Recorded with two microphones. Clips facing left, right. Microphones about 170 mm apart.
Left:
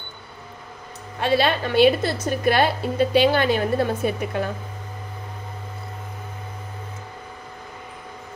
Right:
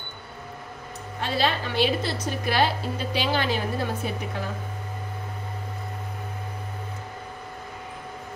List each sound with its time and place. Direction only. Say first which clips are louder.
1.2 s a woman's voice: left 6 dB; 65° left (ahead or behind)